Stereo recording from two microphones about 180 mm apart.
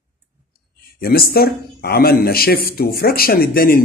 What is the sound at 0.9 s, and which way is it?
Speech, 55° left (ahead or behind).